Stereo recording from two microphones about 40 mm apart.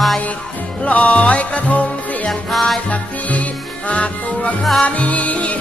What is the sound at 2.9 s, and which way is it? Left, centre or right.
Music, left.